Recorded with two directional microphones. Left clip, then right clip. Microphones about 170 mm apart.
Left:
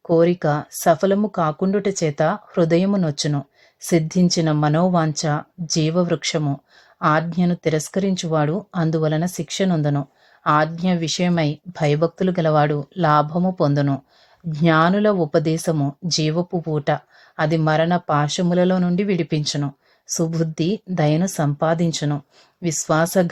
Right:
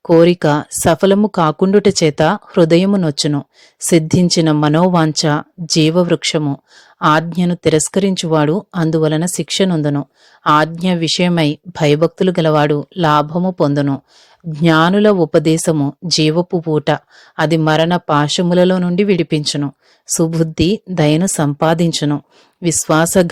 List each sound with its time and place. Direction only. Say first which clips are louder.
0.0 s speech: right 7 dB; 30° right (ahead or behind)